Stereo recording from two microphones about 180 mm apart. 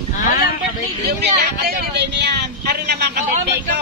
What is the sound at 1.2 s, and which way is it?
Speech, 65° right (ahead or behind).